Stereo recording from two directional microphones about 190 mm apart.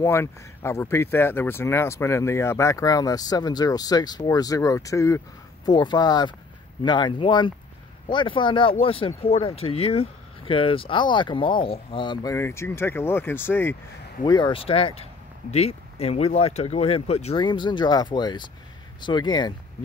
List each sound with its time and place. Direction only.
0.0 s speech: 15° left (ahead or behind)
14.2 s speech: 20° left (ahead or behind)